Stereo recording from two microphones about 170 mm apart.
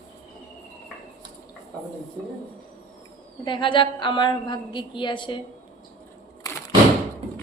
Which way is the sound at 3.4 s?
30° left (ahead or behind).